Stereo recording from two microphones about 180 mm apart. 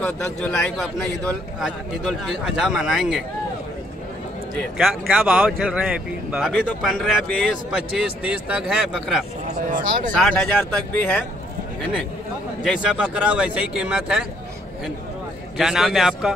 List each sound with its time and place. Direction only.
0.0 s speech: 5° left (ahead or behind)
4.6 s speech: centre (ahead or behind)
9.7 s speech: 45° right (ahead or behind)
10.1 s speech: 5° left (ahead or behind)
12.6 s speech: 5° right (ahead or behind)
15.5 s speech: centre (ahead or behind)